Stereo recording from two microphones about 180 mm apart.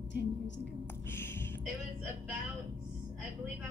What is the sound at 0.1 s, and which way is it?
Speech, 75° left (ahead or behind).